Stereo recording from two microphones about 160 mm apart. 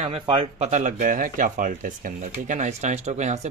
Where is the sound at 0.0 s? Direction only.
35° right (ahead or behind).